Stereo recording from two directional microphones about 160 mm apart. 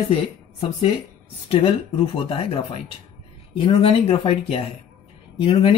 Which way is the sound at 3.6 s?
35° left (ahead or behind).